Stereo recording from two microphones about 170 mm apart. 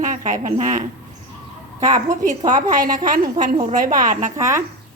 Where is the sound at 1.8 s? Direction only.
20° right (ahead or behind).